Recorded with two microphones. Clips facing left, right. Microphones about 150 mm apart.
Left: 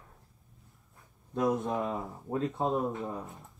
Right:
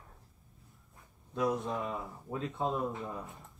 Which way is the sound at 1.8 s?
50° left (ahead or behind).